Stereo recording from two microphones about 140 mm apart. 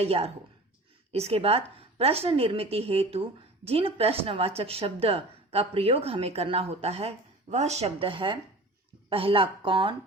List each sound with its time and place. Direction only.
0.0 s a woman's voice: 45° right (ahead or behind)